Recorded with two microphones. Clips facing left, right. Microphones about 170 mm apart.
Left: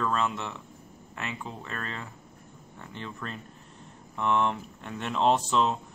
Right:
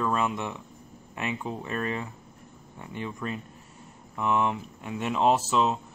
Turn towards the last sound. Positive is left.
turn(degrees=-5)  # may be behind; listen again after turning